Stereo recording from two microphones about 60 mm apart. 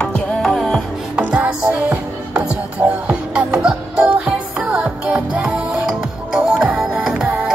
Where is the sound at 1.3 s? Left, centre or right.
Right.